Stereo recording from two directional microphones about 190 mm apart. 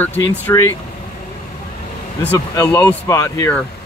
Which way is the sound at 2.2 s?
20° left (ahead or behind).